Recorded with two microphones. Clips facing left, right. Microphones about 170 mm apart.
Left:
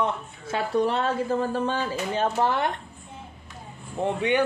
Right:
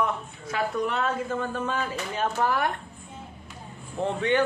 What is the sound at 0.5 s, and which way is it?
Speech, 30° left (ahead or behind).